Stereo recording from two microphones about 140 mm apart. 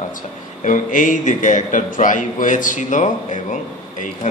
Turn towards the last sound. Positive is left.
turn(degrees=65)  # may be behind; listen again after turning